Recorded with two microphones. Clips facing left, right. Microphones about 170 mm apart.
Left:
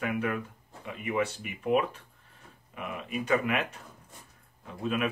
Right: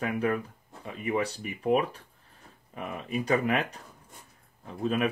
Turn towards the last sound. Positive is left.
turn(degrees=-35)  # may be behind; listen again after turning